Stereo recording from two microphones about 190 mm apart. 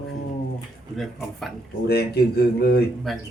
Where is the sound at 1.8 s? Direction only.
55° left (ahead or behind).